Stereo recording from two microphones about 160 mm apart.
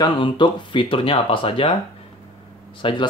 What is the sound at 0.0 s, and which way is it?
Speech, 30° left (ahead or behind).